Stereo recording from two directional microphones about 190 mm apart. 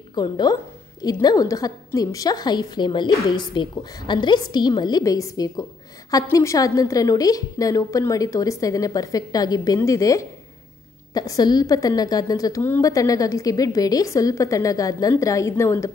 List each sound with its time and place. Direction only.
0.1 s a woman's voice: 20° left (ahead or behind)